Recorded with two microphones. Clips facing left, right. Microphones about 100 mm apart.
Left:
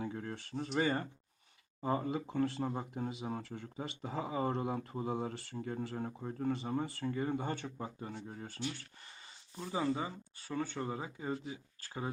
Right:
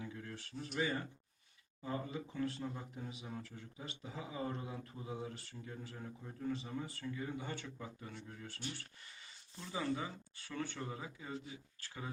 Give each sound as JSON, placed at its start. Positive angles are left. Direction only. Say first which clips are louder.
{"t": 0.0, "sound": "speech", "louder": "left 7 dB", "side_deg": 50}
{"t": 9.6, "sound": "speech", "louder": "left 4 dB", "side_deg": 25}